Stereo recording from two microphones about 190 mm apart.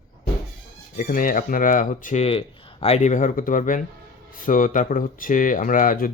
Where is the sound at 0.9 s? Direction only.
45° left (ahead or behind).